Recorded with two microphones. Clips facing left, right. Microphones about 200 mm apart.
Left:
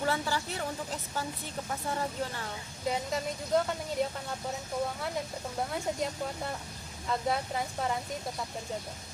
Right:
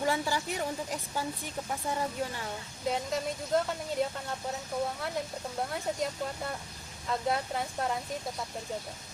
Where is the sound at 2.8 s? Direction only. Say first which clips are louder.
Right 1 dB; centre (ahead or behind).